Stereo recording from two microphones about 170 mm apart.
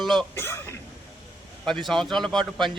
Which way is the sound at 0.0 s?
Centre (ahead or behind).